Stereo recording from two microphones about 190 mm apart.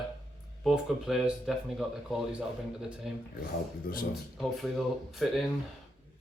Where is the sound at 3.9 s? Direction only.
50° left (ahead or behind).